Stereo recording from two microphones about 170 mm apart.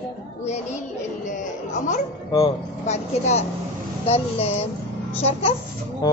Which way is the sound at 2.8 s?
40° left (ahead or behind).